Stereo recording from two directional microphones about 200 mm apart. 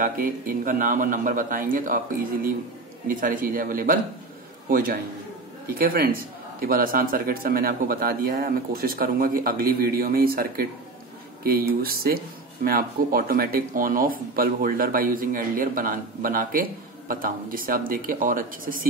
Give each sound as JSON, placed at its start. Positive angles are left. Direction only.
{"t": 0.0, "sound": "a man's voice", "side_deg": -45}
{"t": 3.1, "sound": "a man's voice", "side_deg": -45}